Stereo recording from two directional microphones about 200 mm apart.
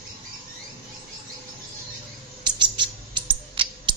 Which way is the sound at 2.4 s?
25° right (ahead or behind).